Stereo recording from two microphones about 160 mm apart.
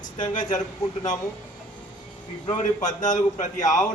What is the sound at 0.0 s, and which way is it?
Speech, 50° left (ahead or behind).